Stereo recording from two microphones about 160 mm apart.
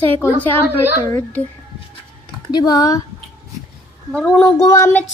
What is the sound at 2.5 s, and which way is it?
Speech, 25° left (ahead or behind).